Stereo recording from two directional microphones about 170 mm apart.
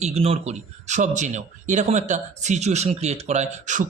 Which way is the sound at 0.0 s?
40° right (ahead or behind).